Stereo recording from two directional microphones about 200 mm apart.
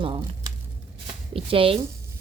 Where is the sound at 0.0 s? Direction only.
25° right (ahead or behind).